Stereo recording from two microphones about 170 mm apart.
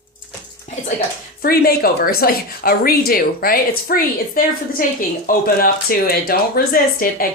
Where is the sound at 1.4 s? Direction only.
60° left (ahead or behind).